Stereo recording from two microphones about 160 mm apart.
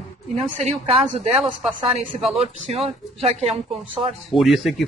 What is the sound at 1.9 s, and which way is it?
Speech, 40° right (ahead or behind).